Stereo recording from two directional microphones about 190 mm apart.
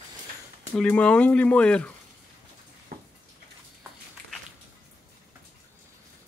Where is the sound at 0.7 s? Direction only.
5° left (ahead or behind).